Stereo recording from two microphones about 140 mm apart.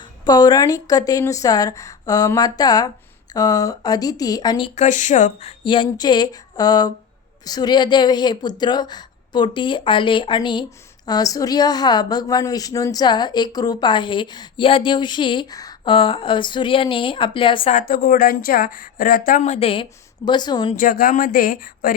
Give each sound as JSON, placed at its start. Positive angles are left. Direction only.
{"t": 0.3, "sound": "a woman's voice", "side_deg": 30}
{"t": 4.7, "sound": "speech", "side_deg": 60}
{"t": 5.6, "sound": "a woman's voice", "side_deg": 35}
{"t": 17.7, "sound": "a woman's voice", "side_deg": 75}
{"t": 19.4, "sound": "a woman's voice", "side_deg": 50}
{"t": 20.7, "sound": "a woman's voice", "side_deg": 85}